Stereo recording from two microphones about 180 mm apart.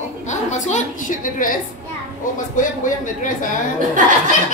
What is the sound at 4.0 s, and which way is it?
Speech, 45° right (ahead or behind).